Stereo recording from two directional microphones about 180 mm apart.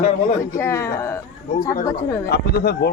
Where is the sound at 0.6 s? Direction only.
15° left (ahead or behind).